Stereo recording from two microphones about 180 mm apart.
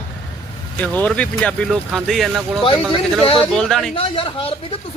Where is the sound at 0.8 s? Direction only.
5° left (ahead or behind).